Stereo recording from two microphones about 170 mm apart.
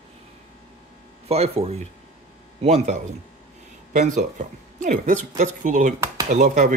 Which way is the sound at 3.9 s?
45° right (ahead or behind).